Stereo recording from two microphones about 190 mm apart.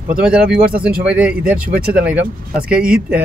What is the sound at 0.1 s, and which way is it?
Speech, 5° right (ahead or behind).